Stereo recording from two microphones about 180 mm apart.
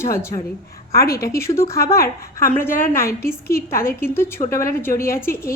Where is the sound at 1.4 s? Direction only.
15° left (ahead or behind).